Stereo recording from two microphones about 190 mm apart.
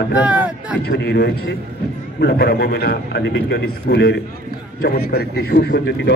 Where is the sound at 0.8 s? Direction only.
65° left (ahead or behind).